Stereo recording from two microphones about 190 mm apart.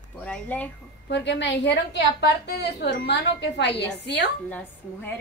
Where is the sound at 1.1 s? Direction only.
65° left (ahead or behind).